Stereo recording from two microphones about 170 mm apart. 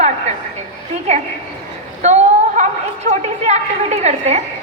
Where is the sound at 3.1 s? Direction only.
40° right (ahead or behind).